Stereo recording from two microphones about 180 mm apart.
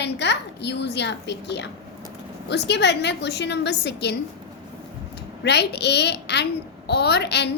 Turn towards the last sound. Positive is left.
turn(degrees=70)  # may be behind; listen again after turning